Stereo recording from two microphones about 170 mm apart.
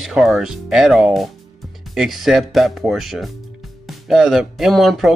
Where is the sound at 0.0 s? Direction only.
Centre (ahead or behind).